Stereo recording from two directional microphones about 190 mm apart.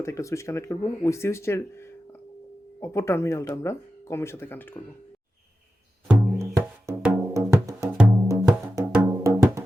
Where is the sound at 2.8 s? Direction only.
15° left (ahead or behind).